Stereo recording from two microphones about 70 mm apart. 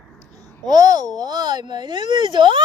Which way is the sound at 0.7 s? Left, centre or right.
Right.